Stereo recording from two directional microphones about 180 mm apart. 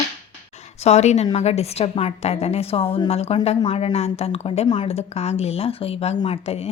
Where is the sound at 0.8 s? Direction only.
35° left (ahead or behind).